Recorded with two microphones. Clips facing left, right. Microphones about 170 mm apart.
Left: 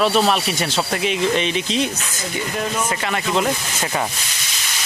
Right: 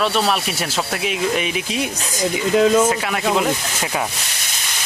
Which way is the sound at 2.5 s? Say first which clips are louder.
Right 12 dB; 90° right.